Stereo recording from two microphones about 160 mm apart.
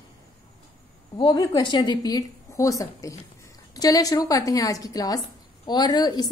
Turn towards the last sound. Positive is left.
turn(degrees=25)  # may be behind; listen again after turning